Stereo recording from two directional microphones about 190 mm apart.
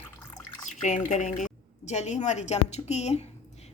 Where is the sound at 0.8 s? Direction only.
40° left (ahead or behind).